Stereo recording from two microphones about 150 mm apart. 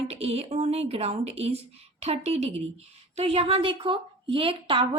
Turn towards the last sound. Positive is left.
turn(degrees=-35)  # may be behind; listen again after turning